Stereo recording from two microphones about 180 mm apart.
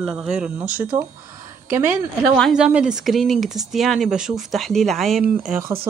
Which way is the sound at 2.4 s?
5° right (ahead or behind).